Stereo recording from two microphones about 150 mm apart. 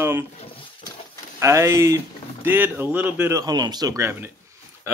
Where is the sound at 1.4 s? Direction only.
20° right (ahead or behind).